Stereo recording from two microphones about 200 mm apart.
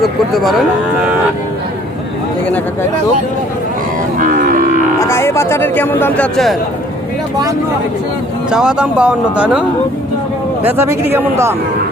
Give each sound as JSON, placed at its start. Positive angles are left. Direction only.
{"t": 0.0, "sound": "speech", "side_deg": 0}
{"t": 4.2, "sound": "cattle", "side_deg": -40}
{"t": 4.9, "sound": "speech", "side_deg": 15}
{"t": 8.4, "sound": "speech", "side_deg": -5}